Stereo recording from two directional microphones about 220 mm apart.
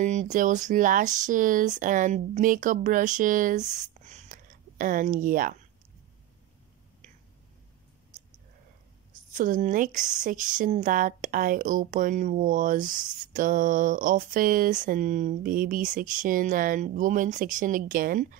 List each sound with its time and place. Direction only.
0.0 s speech: 35° right (ahead or behind)
8.1 s a sound: 35° right (ahead or behind)
9.3 s speech: 40° right (ahead or behind)